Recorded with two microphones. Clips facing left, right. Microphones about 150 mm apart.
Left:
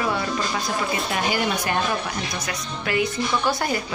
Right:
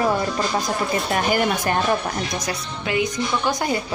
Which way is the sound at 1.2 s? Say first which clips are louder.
Right 3 dB; 50° right (ahead or behind).